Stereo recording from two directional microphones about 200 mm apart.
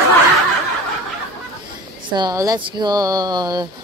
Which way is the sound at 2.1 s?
20° right (ahead or behind).